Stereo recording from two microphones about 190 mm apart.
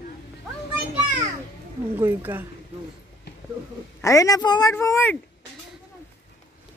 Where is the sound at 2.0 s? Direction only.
10° right (ahead or behind).